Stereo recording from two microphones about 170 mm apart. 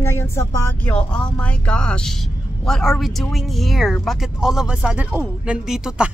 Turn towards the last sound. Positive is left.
turn(degrees=-5)  # may be behind; listen again after turning